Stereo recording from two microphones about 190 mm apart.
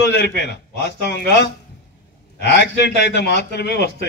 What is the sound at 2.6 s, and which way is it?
A man's voice, 65° left (ahead or behind).